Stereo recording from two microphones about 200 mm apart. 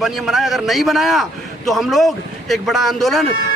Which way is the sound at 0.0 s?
Centre (ahead or behind).